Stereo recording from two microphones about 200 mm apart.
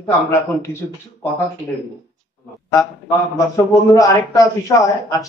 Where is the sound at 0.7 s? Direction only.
10° left (ahead or behind).